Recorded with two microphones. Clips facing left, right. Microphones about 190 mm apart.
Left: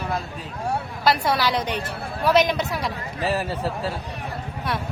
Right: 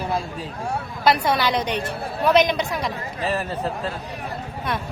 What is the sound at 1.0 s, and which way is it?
A woman's voice, centre (ahead or behind).